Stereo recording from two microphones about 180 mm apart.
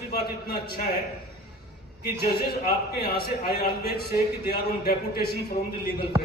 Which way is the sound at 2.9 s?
60° left (ahead or behind).